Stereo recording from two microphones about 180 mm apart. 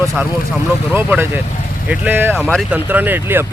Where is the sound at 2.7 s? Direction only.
10° right (ahead or behind).